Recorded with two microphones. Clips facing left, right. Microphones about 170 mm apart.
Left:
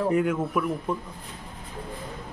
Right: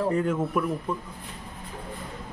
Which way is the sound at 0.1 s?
10° left (ahead or behind).